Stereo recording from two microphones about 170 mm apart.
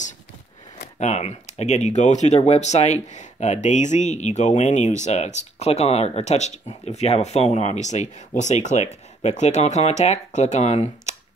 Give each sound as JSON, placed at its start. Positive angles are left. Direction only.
{"t": 0.9, "sound": "speech", "side_deg": 40}